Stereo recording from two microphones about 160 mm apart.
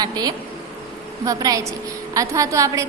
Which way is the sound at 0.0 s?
25° right (ahead or behind).